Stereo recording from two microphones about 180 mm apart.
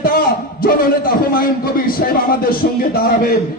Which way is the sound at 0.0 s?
55° left (ahead or behind).